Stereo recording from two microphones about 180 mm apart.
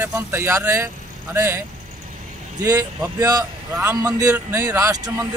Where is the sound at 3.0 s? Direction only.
20° right (ahead or behind).